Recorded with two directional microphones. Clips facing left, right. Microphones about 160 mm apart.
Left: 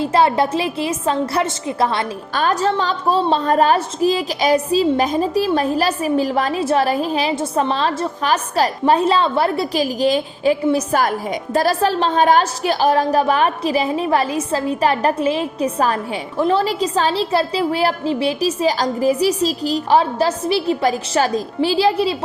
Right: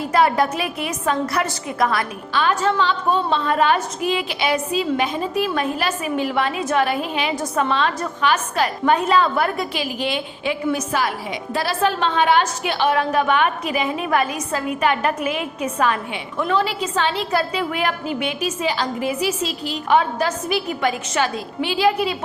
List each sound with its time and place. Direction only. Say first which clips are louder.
0.0 s a woman's voice: left 2 dB; 30° left (ahead or behind)
2.3 s a woman's voice: left 1 dB; 40° left (ahead or behind)
10.9 s a woman's voice: left 5 dB; 45° left (ahead or behind)